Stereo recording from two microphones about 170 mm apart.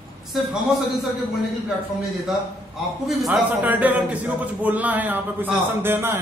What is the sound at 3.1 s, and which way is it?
A man's voice, 5° right (ahead or behind).